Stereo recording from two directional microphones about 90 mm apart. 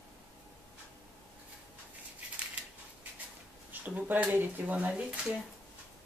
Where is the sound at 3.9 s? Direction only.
15° right (ahead or behind).